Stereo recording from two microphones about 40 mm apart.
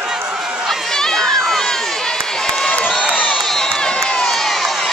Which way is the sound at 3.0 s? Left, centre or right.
Centre.